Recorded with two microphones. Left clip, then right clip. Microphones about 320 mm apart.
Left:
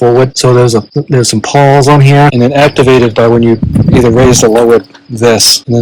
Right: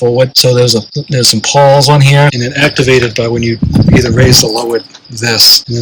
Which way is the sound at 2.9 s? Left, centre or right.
Left.